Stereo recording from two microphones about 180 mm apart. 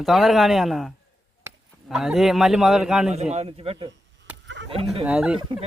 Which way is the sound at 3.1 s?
35° right (ahead or behind).